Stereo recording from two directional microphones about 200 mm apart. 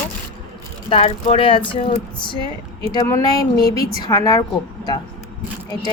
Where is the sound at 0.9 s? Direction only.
30° left (ahead or behind).